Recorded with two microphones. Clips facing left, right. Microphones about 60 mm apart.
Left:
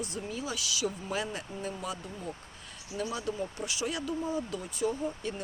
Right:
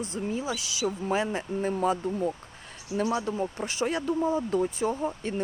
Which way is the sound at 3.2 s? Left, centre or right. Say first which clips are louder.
Right 5 dB; right.